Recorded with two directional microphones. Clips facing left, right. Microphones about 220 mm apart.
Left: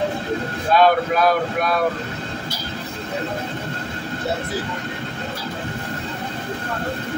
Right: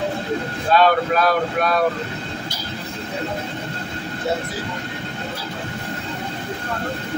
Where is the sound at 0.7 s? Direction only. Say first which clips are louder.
Even; 10° left (ahead or behind).